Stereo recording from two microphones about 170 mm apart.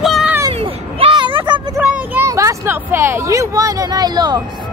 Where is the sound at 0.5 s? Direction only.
30° right (ahead or behind).